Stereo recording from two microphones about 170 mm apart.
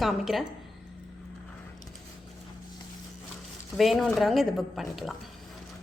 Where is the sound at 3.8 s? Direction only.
Centre (ahead or behind).